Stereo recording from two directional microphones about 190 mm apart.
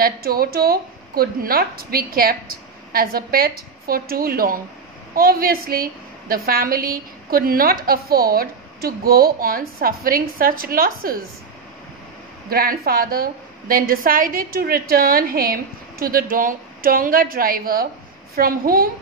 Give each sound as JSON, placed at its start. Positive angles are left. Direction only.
{"t": 0.0, "sound": "a woman's voice", "side_deg": -50}
{"t": 12.4, "sound": "a woman's voice", "side_deg": -55}